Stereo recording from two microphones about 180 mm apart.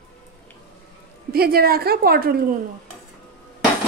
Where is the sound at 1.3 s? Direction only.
60° right (ahead or behind).